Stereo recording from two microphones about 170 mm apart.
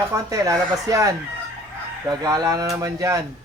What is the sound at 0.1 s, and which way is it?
Speech, 20° right (ahead or behind).